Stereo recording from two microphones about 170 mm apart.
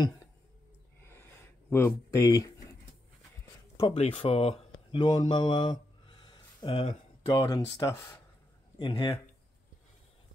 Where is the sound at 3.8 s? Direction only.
35° left (ahead or behind).